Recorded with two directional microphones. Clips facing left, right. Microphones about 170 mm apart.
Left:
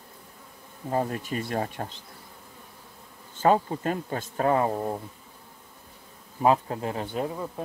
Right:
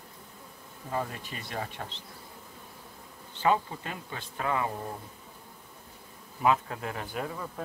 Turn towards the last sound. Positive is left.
turn(degrees=25)  # may be behind; listen again after turning